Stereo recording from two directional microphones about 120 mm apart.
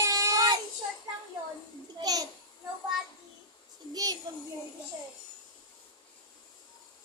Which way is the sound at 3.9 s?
30° right (ahead or behind).